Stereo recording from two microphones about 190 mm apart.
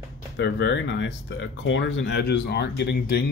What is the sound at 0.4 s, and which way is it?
Speech, 70° left (ahead or behind).